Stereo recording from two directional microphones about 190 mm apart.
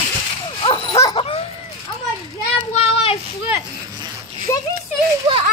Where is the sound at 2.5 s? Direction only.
30° left (ahead or behind).